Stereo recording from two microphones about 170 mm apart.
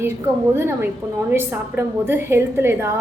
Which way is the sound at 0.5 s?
15° right (ahead or behind).